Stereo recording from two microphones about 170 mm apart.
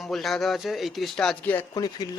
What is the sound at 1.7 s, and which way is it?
Speech, 20° left (ahead or behind).